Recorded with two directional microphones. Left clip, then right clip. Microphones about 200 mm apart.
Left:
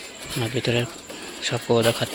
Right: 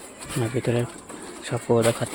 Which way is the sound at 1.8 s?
5° left (ahead or behind).